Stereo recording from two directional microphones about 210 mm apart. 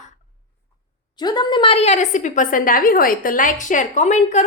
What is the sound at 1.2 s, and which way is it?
A woman's voice, 20° left (ahead or behind).